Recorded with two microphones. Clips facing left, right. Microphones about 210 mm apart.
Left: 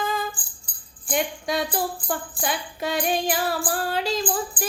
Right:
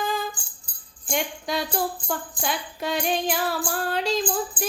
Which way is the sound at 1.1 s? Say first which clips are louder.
Left 2 dB; centre (ahead or behind).